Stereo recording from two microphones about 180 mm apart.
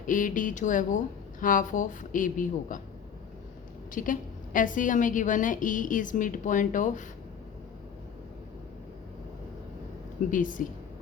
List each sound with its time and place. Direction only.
0.0 s a woman's voice: 45° left (ahead or behind)
3.9 s a woman's voice: 50° left (ahead or behind)
10.3 s a woman's voice: 45° left (ahead or behind)